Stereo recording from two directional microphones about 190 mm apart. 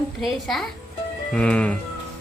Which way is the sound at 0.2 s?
Centre (ahead or behind).